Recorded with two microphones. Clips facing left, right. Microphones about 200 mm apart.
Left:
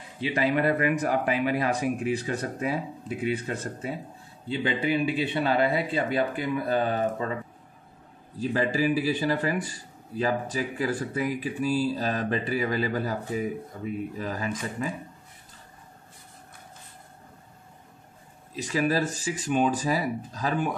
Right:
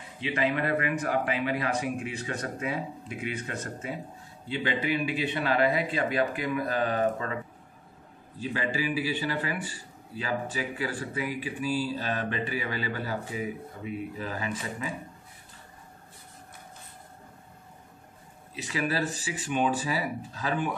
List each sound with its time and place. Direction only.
0.4 s speech: 40° left (ahead or behind)
8.4 s speech: 40° left (ahead or behind)
18.6 s speech: 40° left (ahead or behind)